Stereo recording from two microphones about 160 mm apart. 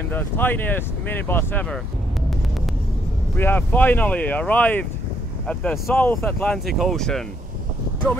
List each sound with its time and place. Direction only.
0.1 s speech: 10° left (ahead or behind)
3.3 s speech: 10° left (ahead or behind)